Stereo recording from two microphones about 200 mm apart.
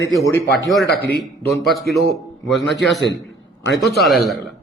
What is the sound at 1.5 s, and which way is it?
Speech, centre (ahead or behind).